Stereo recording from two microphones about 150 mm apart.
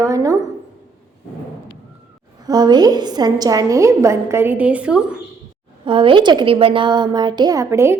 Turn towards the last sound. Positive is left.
turn(degrees=-15)  # may be behind; listen again after turning